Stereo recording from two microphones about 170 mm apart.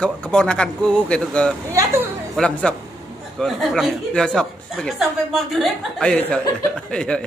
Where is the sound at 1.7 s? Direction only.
20° right (ahead or behind).